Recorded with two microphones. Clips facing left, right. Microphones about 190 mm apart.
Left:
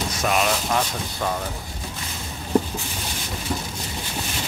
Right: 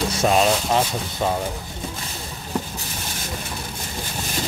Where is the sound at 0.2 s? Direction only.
30° right (ahead or behind).